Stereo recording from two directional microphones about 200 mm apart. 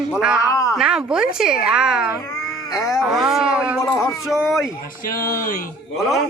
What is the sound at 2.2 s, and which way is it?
Cat, 15° left (ahead or behind).